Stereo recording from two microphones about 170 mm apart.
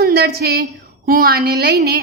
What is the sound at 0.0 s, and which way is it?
A woman's voice, 65° right (ahead or behind).